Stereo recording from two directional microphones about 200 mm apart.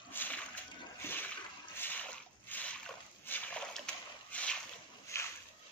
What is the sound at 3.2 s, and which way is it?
Boat, 5° left (ahead or behind).